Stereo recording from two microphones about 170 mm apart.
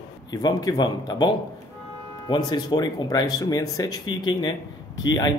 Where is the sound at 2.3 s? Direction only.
25° left (ahead or behind).